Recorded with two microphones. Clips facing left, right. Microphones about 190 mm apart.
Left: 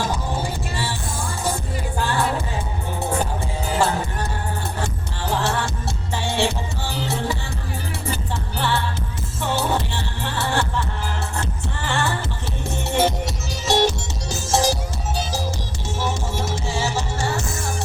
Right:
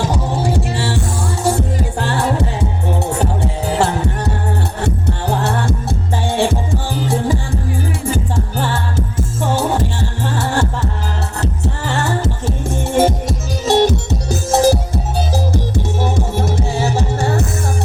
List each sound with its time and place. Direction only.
0.1 s music: 70° right (ahead or behind)
4.8 s music: 60° right (ahead or behind)